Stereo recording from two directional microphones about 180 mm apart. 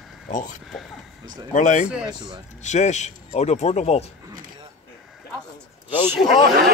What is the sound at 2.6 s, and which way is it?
Speech, 40° left (ahead or behind).